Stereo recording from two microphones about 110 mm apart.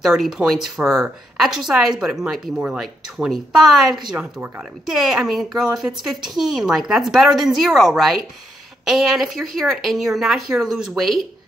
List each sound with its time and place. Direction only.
0.0 s speech: centre (ahead or behind)
2.8 s speech: centre (ahead or behind)